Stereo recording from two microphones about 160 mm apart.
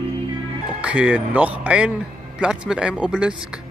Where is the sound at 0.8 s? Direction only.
10° right (ahead or behind).